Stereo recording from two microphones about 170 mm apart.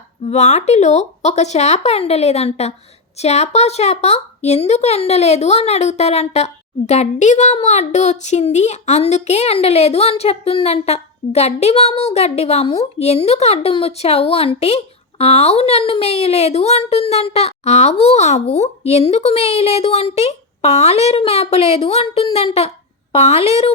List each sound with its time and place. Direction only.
0.3 s a woman's voice: 40° left (ahead or behind)